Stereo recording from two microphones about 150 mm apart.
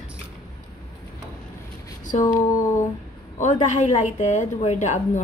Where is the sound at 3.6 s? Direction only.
55° left (ahead or behind).